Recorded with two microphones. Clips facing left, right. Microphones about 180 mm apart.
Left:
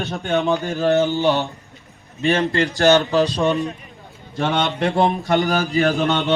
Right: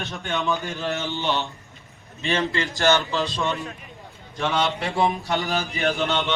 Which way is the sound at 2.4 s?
55° left (ahead or behind).